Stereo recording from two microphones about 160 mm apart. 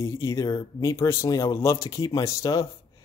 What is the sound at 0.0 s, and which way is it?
Speech, 20° left (ahead or behind).